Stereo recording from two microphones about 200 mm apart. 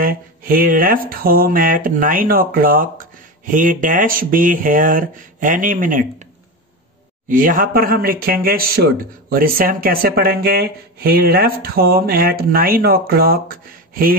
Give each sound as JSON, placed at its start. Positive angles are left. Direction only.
{"t": 0.0, "sound": "speech", "side_deg": -45}
{"t": 7.2, "sound": "speech", "side_deg": -45}